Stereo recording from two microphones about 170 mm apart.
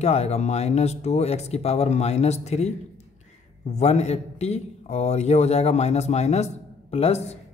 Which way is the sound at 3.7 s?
40° left (ahead or behind).